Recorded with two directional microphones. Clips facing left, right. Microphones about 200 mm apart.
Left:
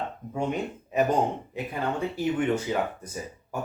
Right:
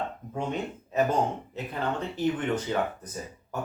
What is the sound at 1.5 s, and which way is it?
Speech, 10° left (ahead or behind).